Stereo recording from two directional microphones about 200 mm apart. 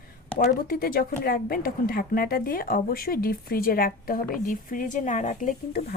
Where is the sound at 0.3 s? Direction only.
45° left (ahead or behind).